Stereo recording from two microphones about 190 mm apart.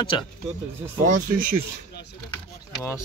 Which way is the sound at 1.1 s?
45° right (ahead or behind).